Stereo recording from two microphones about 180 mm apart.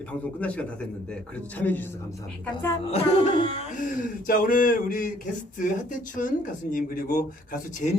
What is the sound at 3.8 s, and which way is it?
Speech, 50° left (ahead or behind).